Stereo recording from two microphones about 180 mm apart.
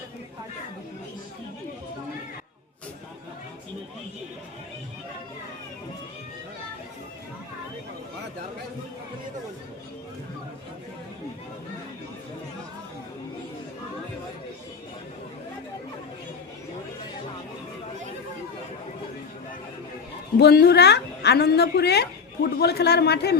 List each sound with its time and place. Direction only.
20.3 s a woman's voice: 65° left (ahead or behind)